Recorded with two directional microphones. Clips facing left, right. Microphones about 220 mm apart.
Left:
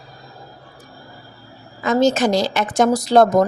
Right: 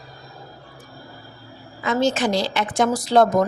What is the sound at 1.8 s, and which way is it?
A woman's voice, 40° left (ahead or behind).